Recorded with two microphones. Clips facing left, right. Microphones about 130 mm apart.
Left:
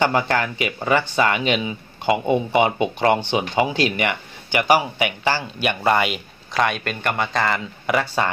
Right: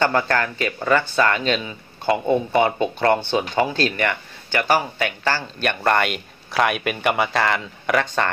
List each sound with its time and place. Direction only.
0.0 s speech: 15° left (ahead or behind)